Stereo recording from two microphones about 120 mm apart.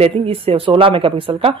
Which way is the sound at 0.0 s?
55° right (ahead or behind).